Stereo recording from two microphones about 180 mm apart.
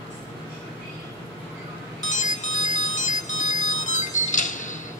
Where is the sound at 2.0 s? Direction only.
45° left (ahead or behind).